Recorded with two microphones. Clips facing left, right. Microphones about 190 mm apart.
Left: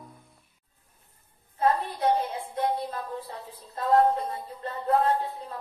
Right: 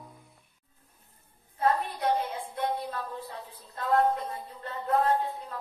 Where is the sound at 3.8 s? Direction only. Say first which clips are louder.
Left 3 dB; 35° left (ahead or behind).